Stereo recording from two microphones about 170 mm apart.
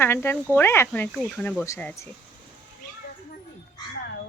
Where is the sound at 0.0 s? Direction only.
15° left (ahead or behind).